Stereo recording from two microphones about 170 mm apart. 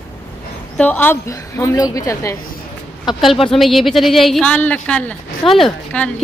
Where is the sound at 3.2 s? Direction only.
Centre (ahead or behind).